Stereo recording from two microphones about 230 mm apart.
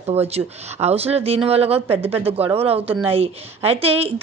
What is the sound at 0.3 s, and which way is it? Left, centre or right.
A woman's voice, right.